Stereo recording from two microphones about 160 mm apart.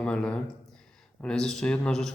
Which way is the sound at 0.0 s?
5° left (ahead or behind).